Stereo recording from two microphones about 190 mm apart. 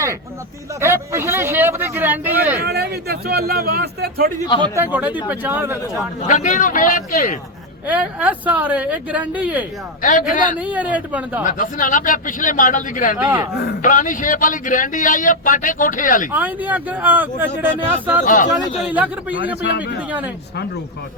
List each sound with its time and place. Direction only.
0.8 s speech: 15° right (ahead or behind)
2.6 s a man's voice: 60° right (ahead or behind)
4.4 s a man's voice: 25° left (ahead or behind)
4.6 s speech: 15° right (ahead or behind)
6.2 s a man's voice: 40° left (ahead or behind)
7.9 s speech: 5° right (ahead or behind)
10.0 s a man's voice: 45° left (ahead or behind)
10.6 s speech: 5° right (ahead or behind)
11.4 s a man's voice: 45° left (ahead or behind)
13.1 s speech: 10° right (ahead or behind)
13.8 s a man's voice: 45° left (ahead or behind)
16.3 s speech: 10° right (ahead or behind)